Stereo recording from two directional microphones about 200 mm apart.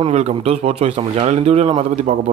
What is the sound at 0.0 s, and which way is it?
A man's voice, 30° right (ahead or behind).